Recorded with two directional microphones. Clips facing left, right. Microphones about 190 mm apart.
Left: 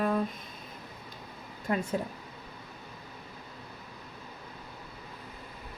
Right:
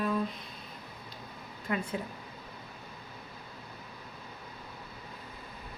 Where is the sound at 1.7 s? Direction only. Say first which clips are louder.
Left 3 dB; 40° left (ahead or behind).